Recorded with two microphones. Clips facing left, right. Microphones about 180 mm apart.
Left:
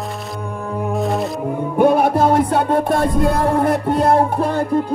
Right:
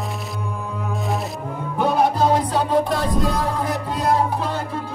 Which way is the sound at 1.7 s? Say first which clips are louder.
Left 5 dB; 55° left (ahead or behind).